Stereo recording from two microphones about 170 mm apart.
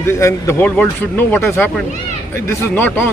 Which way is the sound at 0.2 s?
15° left (ahead or behind).